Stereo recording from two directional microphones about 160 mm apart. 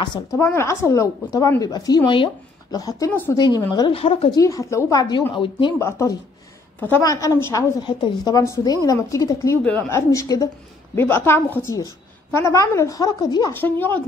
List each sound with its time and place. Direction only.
0.0 s speech: 25° left (ahead or behind)
3.1 s a woman's voice: 10° left (ahead or behind)
3.3 s speech: 25° left (ahead or behind)
3.9 s a woman's voice: 35° left (ahead or behind)
4.4 s a woman's voice: 20° left (ahead or behind)
5.8 s a woman's voice: 20° left (ahead or behind)
7.8 s a woman's voice: 25° left (ahead or behind); by 14.0 s 10° left (ahead or behind)